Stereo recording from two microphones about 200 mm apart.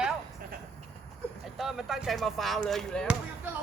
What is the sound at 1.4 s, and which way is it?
Speech, centre (ahead or behind).